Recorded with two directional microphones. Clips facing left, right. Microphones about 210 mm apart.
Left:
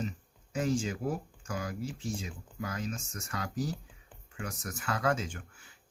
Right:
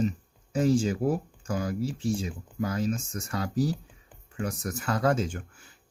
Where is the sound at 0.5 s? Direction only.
35° right (ahead or behind).